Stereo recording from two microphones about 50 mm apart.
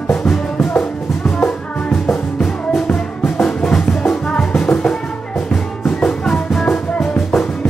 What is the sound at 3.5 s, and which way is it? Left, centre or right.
Music, left.